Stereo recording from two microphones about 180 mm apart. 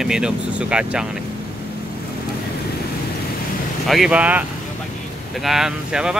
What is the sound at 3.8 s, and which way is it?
Speech, centre (ahead or behind).